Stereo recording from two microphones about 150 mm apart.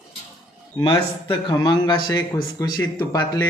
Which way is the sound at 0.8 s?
30° left (ahead or behind).